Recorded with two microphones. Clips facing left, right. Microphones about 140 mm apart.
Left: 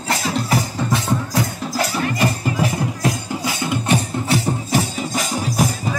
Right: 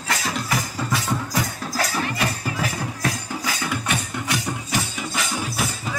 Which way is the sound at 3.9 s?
30° left (ahead or behind).